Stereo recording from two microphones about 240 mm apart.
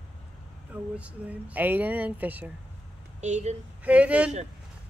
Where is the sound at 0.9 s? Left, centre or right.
Centre.